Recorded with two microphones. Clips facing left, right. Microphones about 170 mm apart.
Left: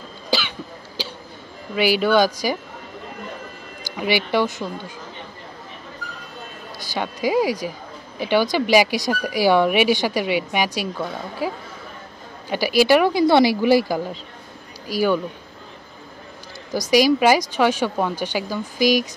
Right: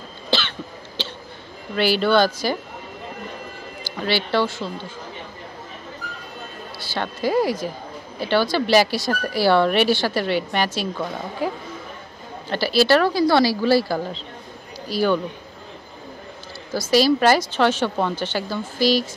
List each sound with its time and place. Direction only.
0.3 s cough: 10° left (ahead or behind)
1.0 s speech: 10° left (ahead or behind)
3.9 s speech: 15° left (ahead or behind)
6.9 s speech: 15° left (ahead or behind)
16.7 s speech: 15° left (ahead or behind)